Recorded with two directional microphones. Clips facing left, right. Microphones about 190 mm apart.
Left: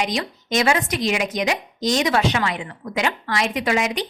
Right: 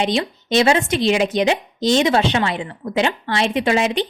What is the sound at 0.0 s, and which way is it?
Speech, 30° right (ahead or behind).